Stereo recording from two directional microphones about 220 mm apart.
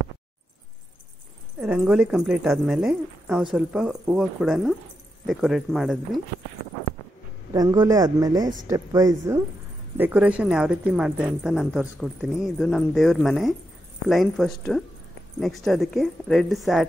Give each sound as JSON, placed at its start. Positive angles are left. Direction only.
{"t": 1.6, "sound": "speech", "side_deg": -5}
{"t": 7.5, "sound": "speech", "side_deg": -15}